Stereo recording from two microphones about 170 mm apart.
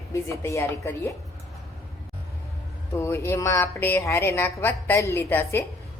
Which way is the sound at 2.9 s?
15° left (ahead or behind).